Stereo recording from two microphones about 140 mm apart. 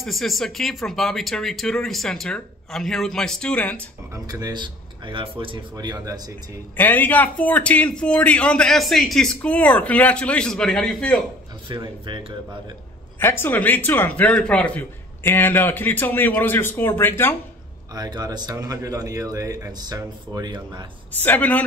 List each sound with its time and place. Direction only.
0.0 s speech: centre (ahead or behind)
4.1 s a man's voice: 25° right (ahead or behind)
6.8 s a man's voice: 10° left (ahead or behind)
11.7 s speech: 35° right (ahead or behind)
13.2 s a man's voice: 15° left (ahead or behind)
17.9 s a man's voice: 30° right (ahead or behind)
21.1 s a man's voice: 15° left (ahead or behind)